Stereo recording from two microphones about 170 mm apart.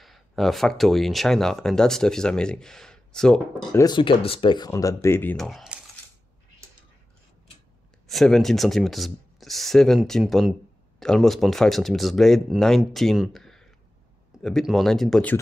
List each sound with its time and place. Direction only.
0.0 s speech: centre (ahead or behind)
3.7 s speech: 25° left (ahead or behind); by 5.8 s centre (ahead or behind)
8.1 s speech: centre (ahead or behind)